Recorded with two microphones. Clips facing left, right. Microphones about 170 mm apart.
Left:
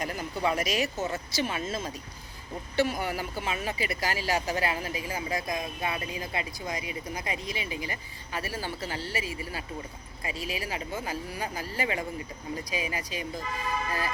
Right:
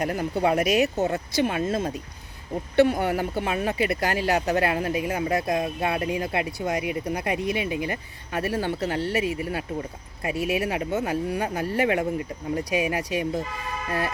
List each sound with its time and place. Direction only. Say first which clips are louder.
0.0 s speech: right 6 dB; 55° right (ahead or behind)